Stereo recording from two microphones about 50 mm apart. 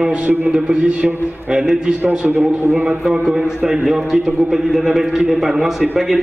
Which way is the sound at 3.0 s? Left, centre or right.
Centre.